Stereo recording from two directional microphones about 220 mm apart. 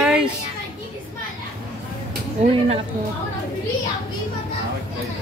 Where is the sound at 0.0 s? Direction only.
5° right (ahead or behind).